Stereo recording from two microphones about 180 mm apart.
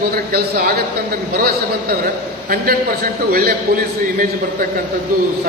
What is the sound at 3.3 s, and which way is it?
Speech, 55° right (ahead or behind).